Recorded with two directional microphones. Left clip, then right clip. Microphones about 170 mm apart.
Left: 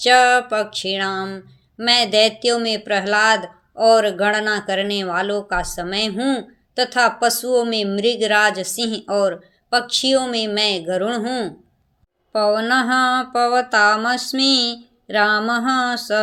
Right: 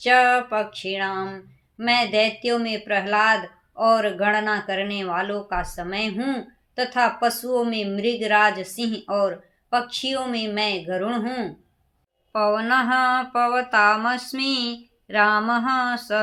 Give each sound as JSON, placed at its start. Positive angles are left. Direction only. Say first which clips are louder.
{"t": 0.0, "sound": "speech", "louder": "left 4 dB", "side_deg": 45}
{"t": 12.3, "sound": "mantra", "louder": "left 3 dB", "side_deg": 40}